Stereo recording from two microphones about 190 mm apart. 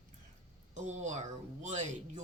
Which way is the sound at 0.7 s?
40° right (ahead or behind).